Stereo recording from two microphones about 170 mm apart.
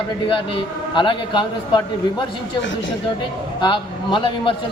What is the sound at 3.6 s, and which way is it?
Speech, 25° left (ahead or behind).